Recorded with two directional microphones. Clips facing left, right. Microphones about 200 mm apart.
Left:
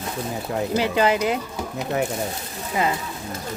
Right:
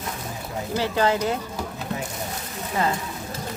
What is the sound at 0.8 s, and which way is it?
Speech, 15° left (ahead or behind).